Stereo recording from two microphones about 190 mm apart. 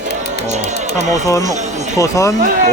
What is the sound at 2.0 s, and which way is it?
Speech, 15° left (ahead or behind).